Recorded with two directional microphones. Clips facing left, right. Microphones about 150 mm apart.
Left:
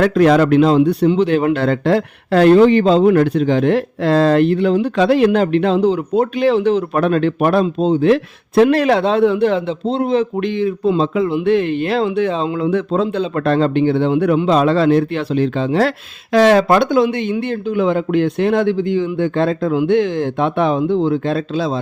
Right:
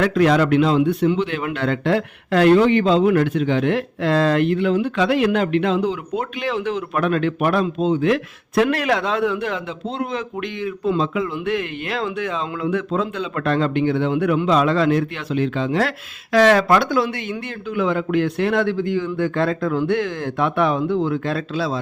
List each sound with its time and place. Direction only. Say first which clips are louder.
0.0 s a man's voice: left 4 dB; 40° left (ahead or behind)